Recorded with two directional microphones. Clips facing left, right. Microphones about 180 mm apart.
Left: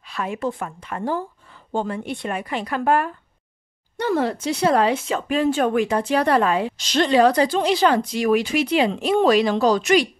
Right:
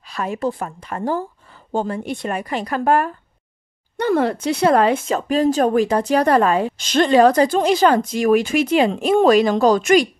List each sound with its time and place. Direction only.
0.0 s a woman's voice: 40° right (ahead or behind)
3.9 s speech: 55° right (ahead or behind)